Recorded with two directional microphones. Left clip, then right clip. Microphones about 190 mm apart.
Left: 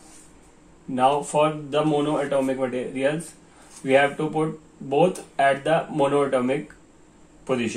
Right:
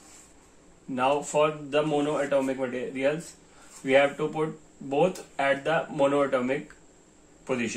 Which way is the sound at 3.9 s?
30° left (ahead or behind).